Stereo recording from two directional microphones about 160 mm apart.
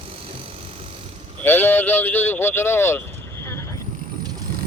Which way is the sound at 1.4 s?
10° left (ahead or behind).